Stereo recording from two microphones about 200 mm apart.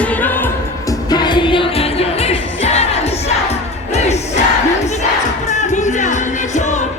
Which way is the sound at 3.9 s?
35° left (ahead or behind).